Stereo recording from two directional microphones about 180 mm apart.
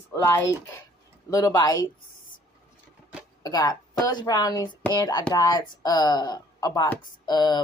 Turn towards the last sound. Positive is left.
turn(degrees=20)  # may be behind; listen again after turning